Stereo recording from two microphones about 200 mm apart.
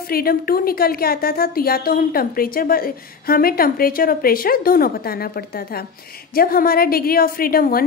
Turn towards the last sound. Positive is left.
turn(degrees=45)  # may be behind; listen again after turning